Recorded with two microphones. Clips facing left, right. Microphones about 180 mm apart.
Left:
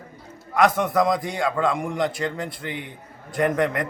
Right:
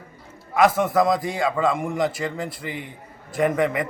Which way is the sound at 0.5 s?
5° right (ahead or behind).